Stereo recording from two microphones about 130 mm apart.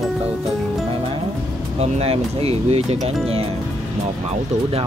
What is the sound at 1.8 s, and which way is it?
Speech, 50° right (ahead or behind).